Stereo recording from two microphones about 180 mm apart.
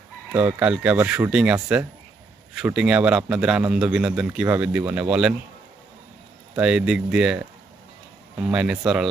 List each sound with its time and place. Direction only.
0.3 s a man's voice: 10° right (ahead or behind)
6.6 s a man's voice: 5° right (ahead or behind)